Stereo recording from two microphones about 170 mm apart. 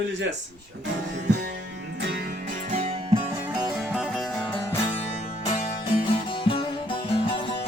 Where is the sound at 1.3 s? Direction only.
75° right (ahead or behind); by 2.9 s 50° right (ahead or behind).